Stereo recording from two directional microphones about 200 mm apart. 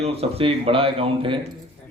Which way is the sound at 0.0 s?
30° right (ahead or behind).